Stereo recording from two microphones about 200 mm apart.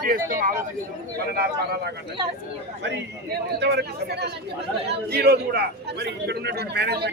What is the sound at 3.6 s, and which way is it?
A man's voice, 55° right (ahead or behind).